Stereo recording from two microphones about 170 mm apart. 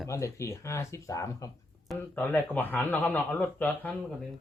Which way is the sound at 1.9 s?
10° left (ahead or behind).